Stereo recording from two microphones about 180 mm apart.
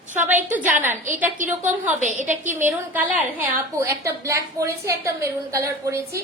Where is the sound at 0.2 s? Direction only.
10° right (ahead or behind).